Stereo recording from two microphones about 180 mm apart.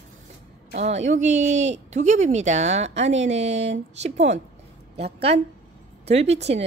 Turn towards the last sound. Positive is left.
turn(degrees=-35)  # may be behind; listen again after turning